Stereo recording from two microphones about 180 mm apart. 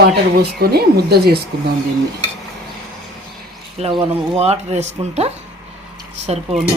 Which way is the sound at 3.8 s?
30° right (ahead or behind).